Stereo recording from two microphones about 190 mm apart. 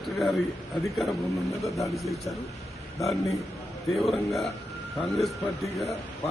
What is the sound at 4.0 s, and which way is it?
Speech, centre (ahead or behind).